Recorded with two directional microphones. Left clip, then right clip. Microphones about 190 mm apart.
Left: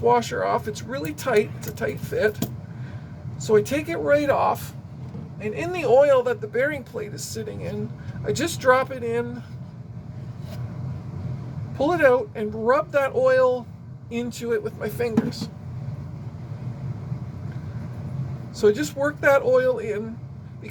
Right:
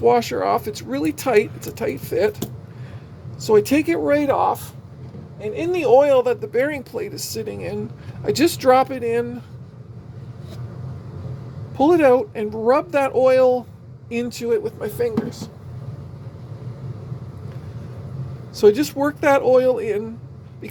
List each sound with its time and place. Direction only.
0.0 s speech: 30° right (ahead or behind)
3.4 s speech: 30° right (ahead or behind)
11.8 s speech: 30° right (ahead or behind)
18.5 s speech: 30° right (ahead or behind)